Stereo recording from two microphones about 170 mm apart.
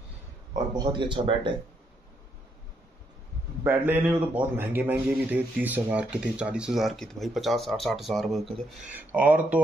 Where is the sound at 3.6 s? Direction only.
10° right (ahead or behind).